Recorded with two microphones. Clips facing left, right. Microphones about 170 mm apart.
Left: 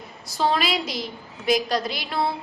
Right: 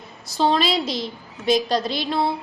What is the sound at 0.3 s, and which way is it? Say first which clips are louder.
A woman's voice: right 3 dB; 25° right (ahead or behind).